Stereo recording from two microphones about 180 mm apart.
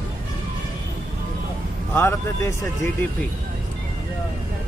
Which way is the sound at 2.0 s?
15° left (ahead or behind).